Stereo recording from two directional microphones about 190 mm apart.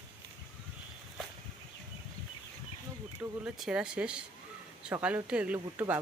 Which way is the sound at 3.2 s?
5° right (ahead or behind).